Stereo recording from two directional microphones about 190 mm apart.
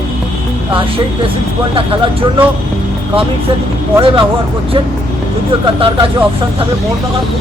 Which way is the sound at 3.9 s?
30° right (ahead or behind).